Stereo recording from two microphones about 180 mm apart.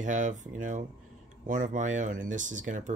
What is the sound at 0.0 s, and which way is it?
Speech, 45° right (ahead or behind).